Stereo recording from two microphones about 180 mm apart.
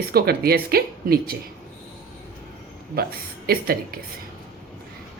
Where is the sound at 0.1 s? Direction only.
60° right (ahead or behind).